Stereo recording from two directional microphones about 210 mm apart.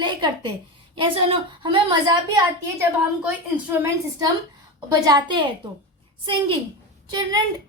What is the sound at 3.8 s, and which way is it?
A woman's voice, 20° right (ahead or behind).